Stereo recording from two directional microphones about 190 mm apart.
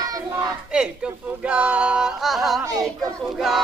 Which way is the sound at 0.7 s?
5° right (ahead or behind).